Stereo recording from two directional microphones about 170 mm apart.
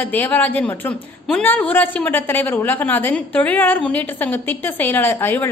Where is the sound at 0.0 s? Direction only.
10° left (ahead or behind).